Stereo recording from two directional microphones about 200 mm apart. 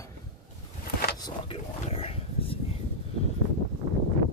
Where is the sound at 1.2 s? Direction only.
25° left (ahead or behind).